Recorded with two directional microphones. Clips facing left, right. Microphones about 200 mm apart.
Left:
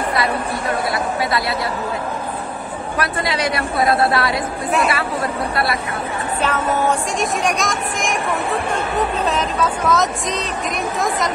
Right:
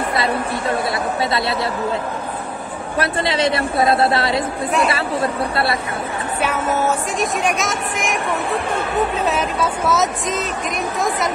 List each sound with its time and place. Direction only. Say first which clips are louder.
0.1 s speech: even; 25° right (ahead or behind)
3.0 s a woman's voice: right 3 dB; 25° right (ahead or behind)
6.4 s a woman's voice: even; 10° right (ahead or behind)